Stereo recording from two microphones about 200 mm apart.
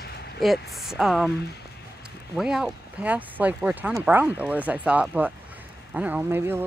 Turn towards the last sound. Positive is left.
turn(degrees=-10)  # may be behind; listen again after turning